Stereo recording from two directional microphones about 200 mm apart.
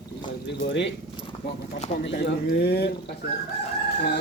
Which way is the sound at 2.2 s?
50° left (ahead or behind).